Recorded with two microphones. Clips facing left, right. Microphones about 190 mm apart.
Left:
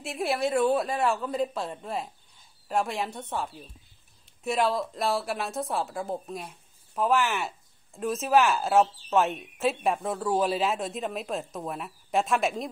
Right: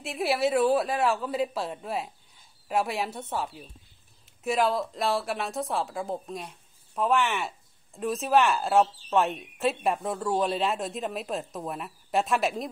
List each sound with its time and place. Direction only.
0.0 s a woman's voice: centre (ahead or behind)